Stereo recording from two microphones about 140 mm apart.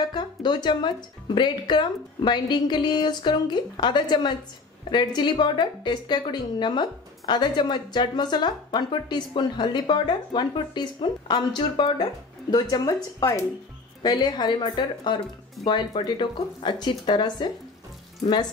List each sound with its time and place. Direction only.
0.1 s a woman's voice: 30° left (ahead or behind)